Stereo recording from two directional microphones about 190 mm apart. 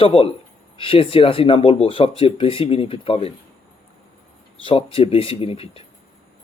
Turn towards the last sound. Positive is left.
turn(degrees=30)  # may be behind; listen again after turning